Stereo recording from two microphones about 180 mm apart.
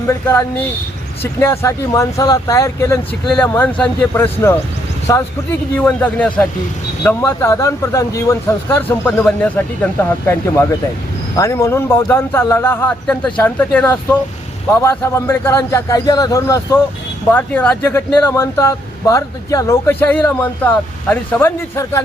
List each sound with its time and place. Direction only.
0.1 s speech: 15° left (ahead or behind)